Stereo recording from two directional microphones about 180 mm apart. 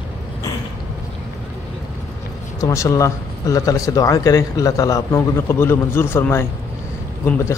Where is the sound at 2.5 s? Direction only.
20° left (ahead or behind).